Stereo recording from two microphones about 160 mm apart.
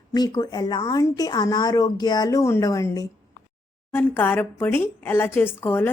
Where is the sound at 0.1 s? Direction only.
25° left (ahead or behind).